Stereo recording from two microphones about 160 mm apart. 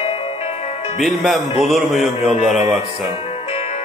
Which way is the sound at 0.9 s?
Centre (ahead or behind).